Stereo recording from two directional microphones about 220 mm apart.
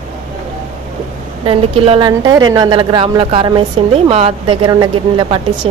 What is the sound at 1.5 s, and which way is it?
A woman's voice, 25° right (ahead or behind).